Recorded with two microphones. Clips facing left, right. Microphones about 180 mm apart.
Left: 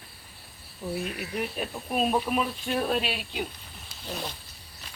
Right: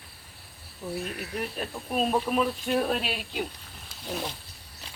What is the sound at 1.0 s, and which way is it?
Speech, 5° left (ahead or behind).